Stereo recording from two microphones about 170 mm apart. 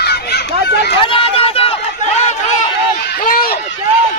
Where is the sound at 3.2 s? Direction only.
55° left (ahead or behind).